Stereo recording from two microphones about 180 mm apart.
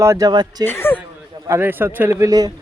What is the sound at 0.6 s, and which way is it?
Speech, 10° left (ahead or behind).